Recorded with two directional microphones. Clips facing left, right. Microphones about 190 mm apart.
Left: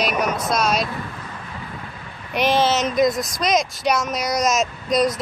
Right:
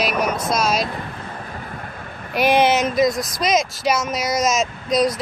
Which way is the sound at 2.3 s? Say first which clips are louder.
Right 2 dB; 10° right (ahead or behind).